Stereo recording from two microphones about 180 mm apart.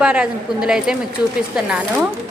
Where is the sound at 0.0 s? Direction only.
5° right (ahead or behind).